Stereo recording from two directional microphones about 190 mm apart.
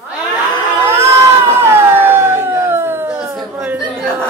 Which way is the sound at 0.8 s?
15° right (ahead or behind).